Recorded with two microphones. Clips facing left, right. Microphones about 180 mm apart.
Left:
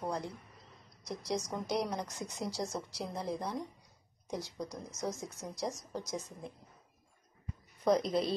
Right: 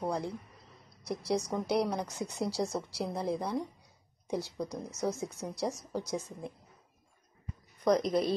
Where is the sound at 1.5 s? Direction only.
10° right (ahead or behind).